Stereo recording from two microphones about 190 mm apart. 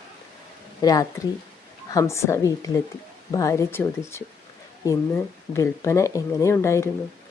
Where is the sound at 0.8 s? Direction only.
20° left (ahead or behind).